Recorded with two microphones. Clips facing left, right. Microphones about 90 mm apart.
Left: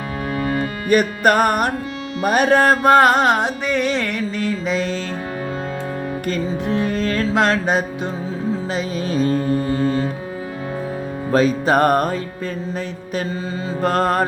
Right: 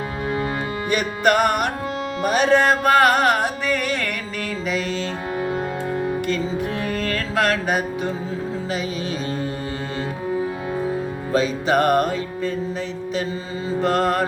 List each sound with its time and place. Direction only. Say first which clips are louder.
0.9 s music: left 4 dB; 45° left (ahead or behind)
2.8 s music: left 3 dB; 30° left (ahead or behind)
6.7 s music: left 4 dB; 25° left (ahead or behind)
8.7 s music: left 4 dB; 40° left (ahead or behind)
11.3 s music: left 4 dB; 45° left (ahead or behind)
13.8 s music: left 2 dB; 45° left (ahead or behind)